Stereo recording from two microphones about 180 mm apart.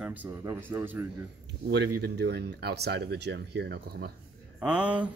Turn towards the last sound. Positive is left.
turn(degrees=-5)  # may be behind; listen again after turning